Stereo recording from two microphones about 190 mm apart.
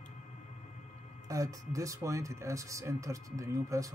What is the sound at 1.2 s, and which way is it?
Speech, 15° right (ahead or behind).